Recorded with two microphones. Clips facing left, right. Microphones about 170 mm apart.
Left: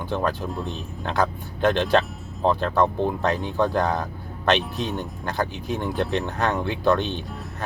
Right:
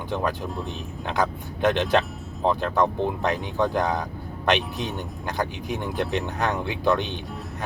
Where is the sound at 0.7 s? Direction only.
15° right (ahead or behind).